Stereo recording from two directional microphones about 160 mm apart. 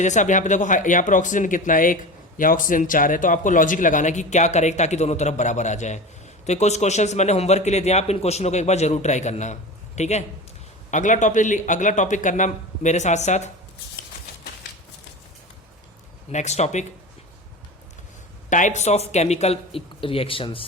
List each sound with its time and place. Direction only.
0.0 s speech: 50° left (ahead or behind)
16.3 s speech: 45° left (ahead or behind)
18.4 s speech: 50° left (ahead or behind); by 20.7 s 35° left (ahead or behind)